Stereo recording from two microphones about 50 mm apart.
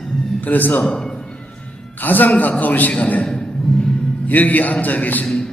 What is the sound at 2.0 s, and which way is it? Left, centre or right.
A man's voice, left.